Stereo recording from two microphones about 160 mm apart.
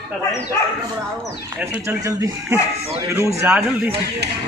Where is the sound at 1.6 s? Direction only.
10° right (ahead or behind).